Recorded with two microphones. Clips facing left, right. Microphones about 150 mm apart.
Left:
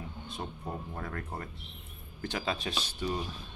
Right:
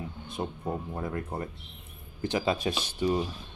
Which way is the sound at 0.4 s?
20° right (ahead or behind).